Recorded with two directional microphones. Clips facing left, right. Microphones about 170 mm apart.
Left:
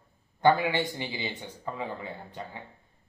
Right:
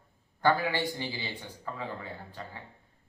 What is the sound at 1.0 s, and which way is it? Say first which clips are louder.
Speech: left 2 dB; 20° left (ahead or behind).